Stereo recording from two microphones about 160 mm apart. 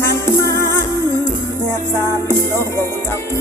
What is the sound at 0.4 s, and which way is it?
Music, 20° left (ahead or behind).